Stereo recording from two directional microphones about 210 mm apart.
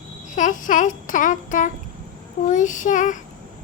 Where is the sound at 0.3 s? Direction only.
35° left (ahead or behind).